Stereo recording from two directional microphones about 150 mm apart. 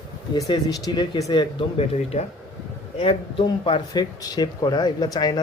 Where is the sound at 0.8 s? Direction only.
25° left (ahead or behind).